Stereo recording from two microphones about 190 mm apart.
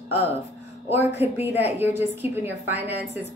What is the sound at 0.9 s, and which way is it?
Speech, 35° left (ahead or behind).